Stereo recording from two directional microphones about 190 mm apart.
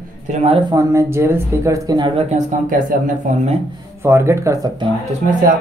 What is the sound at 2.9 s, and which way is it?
Speech, 40° right (ahead or behind).